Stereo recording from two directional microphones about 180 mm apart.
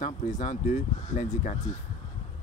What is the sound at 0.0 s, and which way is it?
Speech, 45° left (ahead or behind).